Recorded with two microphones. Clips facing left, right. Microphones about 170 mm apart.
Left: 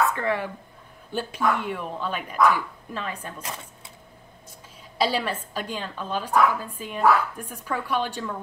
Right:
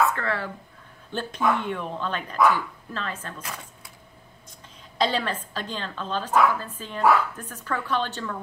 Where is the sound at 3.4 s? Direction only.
25° left (ahead or behind).